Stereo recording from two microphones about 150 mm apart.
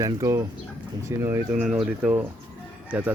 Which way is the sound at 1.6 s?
5° right (ahead or behind).